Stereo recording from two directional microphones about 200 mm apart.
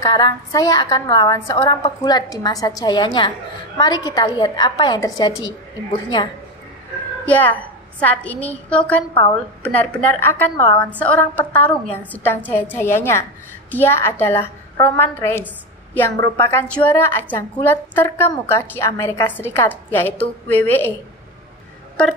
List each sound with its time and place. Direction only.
0.0 s a woman's voice: 20° left (ahead or behind)
7.2 s a woman's voice: 10° left (ahead or behind)